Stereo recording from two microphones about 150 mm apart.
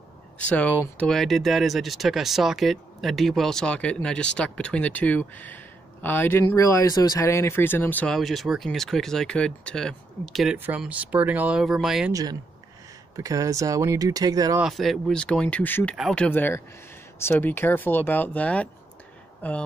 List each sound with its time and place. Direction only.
0.5 s speech: 10° left (ahead or behind)
12.1 s speech: 25° right (ahead or behind)
14.6 s speech: centre (ahead or behind)
16.3 s speech: 15° left (ahead or behind)